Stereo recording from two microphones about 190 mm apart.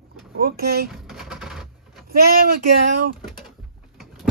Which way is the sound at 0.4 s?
50° right (ahead or behind).